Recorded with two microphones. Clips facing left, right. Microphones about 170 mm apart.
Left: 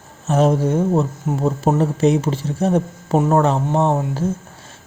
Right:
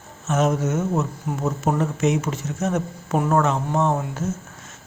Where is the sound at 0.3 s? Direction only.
30° left (ahead or behind).